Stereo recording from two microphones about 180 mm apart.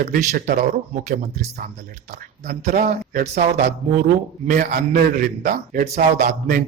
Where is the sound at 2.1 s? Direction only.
40° right (ahead or behind).